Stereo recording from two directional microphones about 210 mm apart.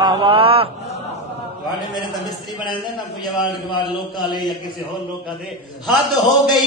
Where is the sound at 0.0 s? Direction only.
25° right (ahead or behind).